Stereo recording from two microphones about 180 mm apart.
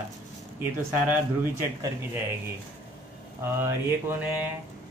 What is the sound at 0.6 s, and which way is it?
Speech, 10° right (ahead or behind).